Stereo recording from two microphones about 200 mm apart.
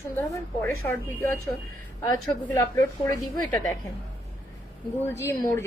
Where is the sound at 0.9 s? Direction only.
15° left (ahead or behind).